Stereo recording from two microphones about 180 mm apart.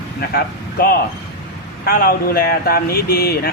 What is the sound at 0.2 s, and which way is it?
Speech, 60° left (ahead or behind).